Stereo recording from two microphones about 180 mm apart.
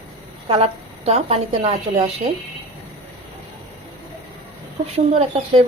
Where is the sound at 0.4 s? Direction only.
35° right (ahead or behind).